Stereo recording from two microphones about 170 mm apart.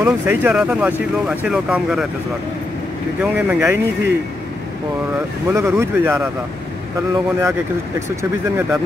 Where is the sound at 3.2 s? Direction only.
5° right (ahead or behind).